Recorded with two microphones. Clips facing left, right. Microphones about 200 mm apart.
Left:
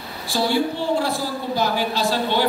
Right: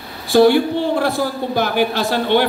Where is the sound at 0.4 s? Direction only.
55° right (ahead or behind).